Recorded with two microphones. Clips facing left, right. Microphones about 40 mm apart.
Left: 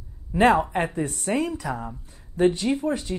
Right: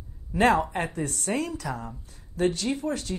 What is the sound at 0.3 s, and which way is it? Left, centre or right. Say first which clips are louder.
Speech: left 3 dB; centre.